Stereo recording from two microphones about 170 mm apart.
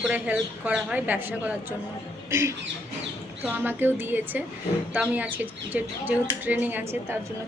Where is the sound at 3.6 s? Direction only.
10° right (ahead or behind).